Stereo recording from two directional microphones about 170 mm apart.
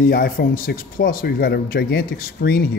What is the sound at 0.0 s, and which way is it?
Speech, 60° left (ahead or behind).